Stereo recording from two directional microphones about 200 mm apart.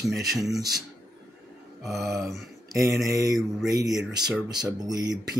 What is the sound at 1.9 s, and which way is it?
Speech, 15° right (ahead or behind).